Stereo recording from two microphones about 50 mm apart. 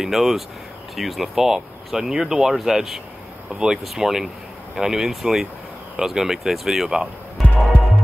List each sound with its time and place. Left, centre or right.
0.0 s speech: centre